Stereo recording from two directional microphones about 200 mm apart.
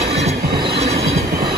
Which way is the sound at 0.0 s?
30° right (ahead or behind).